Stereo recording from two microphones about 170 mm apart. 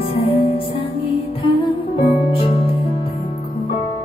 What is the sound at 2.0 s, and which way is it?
Music, 35° left (ahead or behind).